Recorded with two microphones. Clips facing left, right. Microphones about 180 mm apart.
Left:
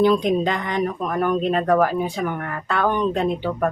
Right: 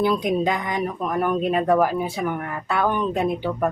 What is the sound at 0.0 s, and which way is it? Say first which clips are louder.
Speech: left 3 dB; 5° right (ahead or behind).